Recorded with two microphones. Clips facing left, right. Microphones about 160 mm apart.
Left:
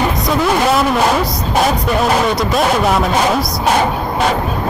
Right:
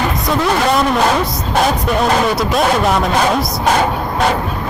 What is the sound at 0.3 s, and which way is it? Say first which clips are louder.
Speech: even; centre (ahead or behind).